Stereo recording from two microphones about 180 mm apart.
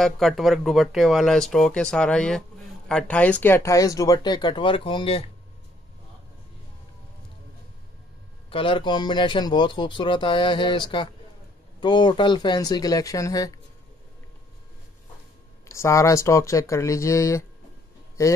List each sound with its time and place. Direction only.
0.0 s speech: centre (ahead or behind); by 5.2 s 30° left (ahead or behind)
8.5 s speech: 30° left (ahead or behind)
15.7 s speech: 15° left (ahead or behind)